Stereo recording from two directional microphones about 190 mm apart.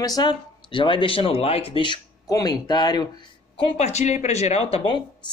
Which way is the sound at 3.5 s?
30° left (ahead or behind).